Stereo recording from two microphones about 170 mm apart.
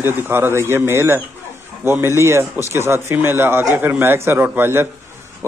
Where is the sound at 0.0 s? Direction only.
15° right (ahead or behind).